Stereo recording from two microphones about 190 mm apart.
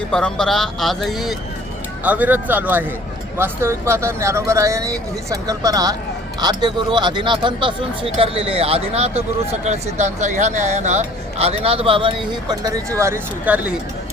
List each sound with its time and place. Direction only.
0.1 s a man's voice: 5° left (ahead or behind)